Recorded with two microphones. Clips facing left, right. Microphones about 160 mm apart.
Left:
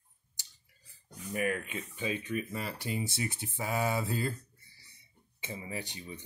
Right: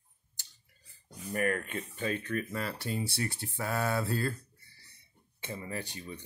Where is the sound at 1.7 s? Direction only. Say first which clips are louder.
Right 1 dB; 10° left (ahead or behind).